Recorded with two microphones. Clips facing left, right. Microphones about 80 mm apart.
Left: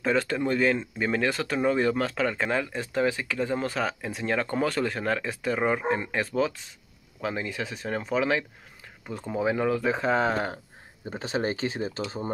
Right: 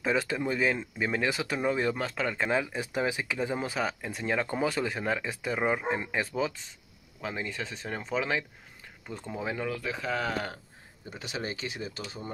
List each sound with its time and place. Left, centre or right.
0.0 s speech: centre
9.8 s speech: left